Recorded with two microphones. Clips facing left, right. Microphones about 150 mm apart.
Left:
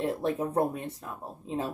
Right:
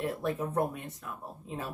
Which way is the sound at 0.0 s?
30° left (ahead or behind).